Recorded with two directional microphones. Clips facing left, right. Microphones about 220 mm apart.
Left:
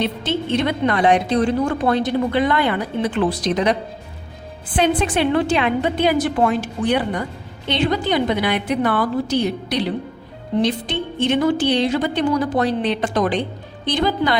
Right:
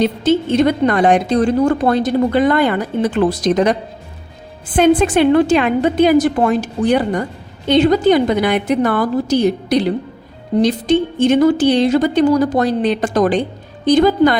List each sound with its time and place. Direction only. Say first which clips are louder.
0.0 s a woman's voice: right 7 dB; 45° right (ahead or behind)